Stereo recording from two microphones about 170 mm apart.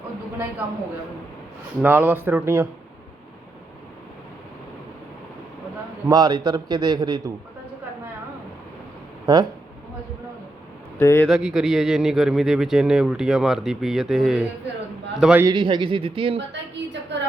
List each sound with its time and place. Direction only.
1.8 s speech: 10° right (ahead or behind)
6.1 s a man's voice: 25° right (ahead or behind)
9.2 s speech: 25° right (ahead or behind)
11.0 s speech: 15° left (ahead or behind)
11.3 s a man's voice: 5° right (ahead or behind)
15.4 s a man's voice: 25° right (ahead or behind)
16.5 s a woman's voice: 90° right